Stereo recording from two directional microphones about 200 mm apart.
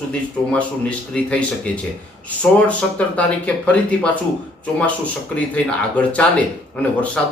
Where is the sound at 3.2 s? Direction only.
5° left (ahead or behind).